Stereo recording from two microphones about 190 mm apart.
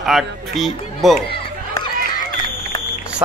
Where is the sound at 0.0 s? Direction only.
Centre (ahead or behind).